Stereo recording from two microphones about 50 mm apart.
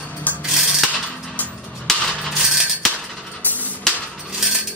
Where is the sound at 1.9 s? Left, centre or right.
Centre.